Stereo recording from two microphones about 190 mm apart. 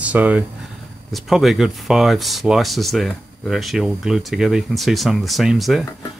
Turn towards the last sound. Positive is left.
turn(degrees=0)  # may be behind; listen again after turning